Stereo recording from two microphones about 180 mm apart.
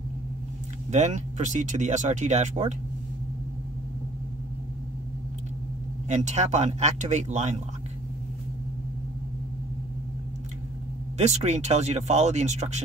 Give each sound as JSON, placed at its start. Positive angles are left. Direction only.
{"t": 0.9, "sound": "speech", "side_deg": -40}
{"t": 6.0, "sound": "speech", "side_deg": -40}
{"t": 11.1, "sound": "speech", "side_deg": -40}